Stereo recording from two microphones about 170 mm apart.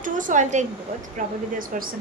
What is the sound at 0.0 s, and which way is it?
A woman's voice, 50° right (ahead or behind).